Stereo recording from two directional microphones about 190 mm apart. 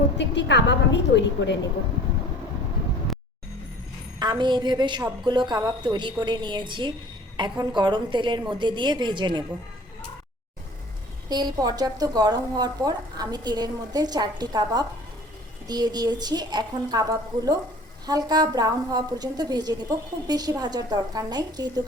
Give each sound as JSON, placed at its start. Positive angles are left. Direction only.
{"t": 0.2, "sound": "a woman's voice", "side_deg": 65}
{"t": 4.2, "sound": "a woman's voice", "side_deg": -25}
{"t": 11.3, "sound": "a woman's voice", "side_deg": -20}